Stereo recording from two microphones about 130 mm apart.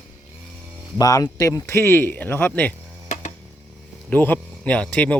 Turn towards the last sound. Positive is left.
turn(degrees=10)  # may be behind; listen again after turning